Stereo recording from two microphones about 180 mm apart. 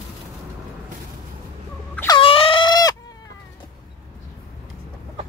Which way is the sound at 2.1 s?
30° left (ahead or behind).